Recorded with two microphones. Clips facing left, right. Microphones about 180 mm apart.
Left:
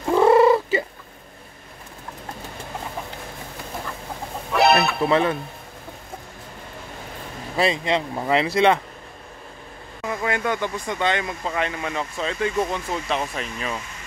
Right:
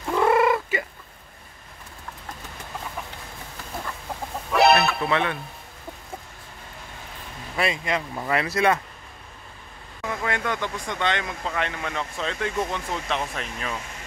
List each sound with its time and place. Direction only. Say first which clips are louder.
0.0 s fowl: left 5 dB; 30° left (ahead or behind)
4.5 s music: even; centre (ahead or behind)
5.1 s speech: left 7 dB; 35° left (ahead or behind)
7.5 s speech: left 4 dB; 30° left (ahead or behind)
10.0 s speech: left 3 dB; 5° left (ahead or behind)